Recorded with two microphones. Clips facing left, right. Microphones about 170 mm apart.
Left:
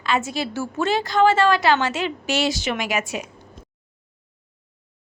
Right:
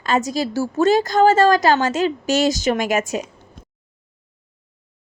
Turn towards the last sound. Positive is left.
turn(degrees=-45)  # may be behind; listen again after turning